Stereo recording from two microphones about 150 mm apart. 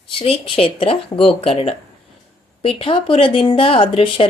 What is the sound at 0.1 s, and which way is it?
Speech, 35° left (ahead or behind).